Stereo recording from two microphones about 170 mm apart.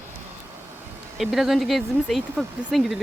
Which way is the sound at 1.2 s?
Centre (ahead or behind).